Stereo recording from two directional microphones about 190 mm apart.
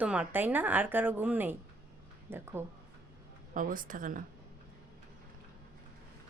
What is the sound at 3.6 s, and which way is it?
Speech, 45° right (ahead or behind).